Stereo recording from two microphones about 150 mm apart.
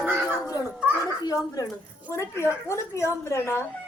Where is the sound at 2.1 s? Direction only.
20° left (ahead or behind).